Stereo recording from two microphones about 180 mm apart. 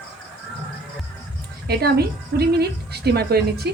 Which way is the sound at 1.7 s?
60° right (ahead or behind).